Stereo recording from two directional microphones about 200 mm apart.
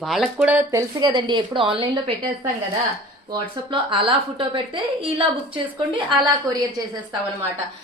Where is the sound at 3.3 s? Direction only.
25° right (ahead or behind).